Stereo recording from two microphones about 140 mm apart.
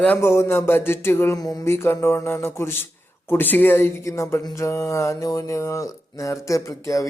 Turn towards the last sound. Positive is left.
turn(degrees=25)  # may be behind; listen again after turning